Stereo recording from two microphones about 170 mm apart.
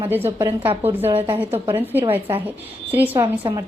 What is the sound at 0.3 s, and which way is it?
A woman's voice, 15° right (ahead or behind).